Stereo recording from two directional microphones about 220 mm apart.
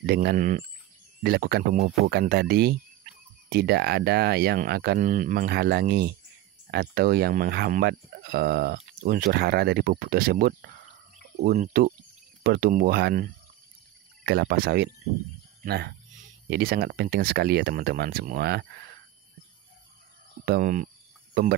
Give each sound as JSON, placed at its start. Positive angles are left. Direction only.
{"t": 0.0, "sound": "speech", "side_deg": -45}
{"t": 20.4, "sound": "speech", "side_deg": -40}